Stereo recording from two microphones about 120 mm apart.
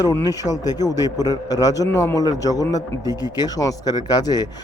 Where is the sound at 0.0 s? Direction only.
25° left (ahead or behind).